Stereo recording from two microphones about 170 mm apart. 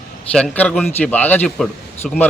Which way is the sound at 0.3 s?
5° left (ahead or behind).